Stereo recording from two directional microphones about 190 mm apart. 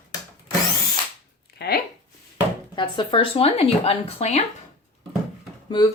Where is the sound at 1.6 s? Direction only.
55° left (ahead or behind).